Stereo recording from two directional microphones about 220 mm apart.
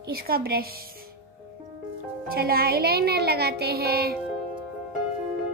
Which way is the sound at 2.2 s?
45° right (ahead or behind).